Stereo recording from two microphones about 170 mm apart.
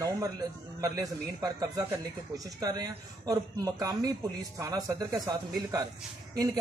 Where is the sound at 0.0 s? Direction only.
20° right (ahead or behind).